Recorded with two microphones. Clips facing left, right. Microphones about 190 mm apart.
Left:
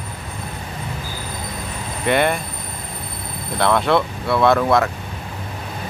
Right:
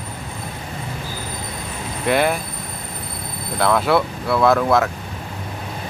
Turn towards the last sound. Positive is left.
turn(degrees=0)  # may be behind; listen again after turning